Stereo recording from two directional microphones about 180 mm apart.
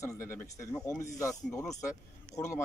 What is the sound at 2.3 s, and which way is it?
Speech, 15° left (ahead or behind).